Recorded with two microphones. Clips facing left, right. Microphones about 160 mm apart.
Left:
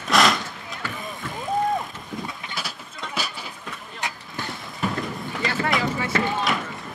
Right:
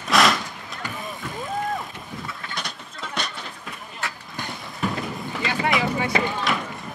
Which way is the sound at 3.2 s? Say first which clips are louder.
Even; 5° left (ahead or behind).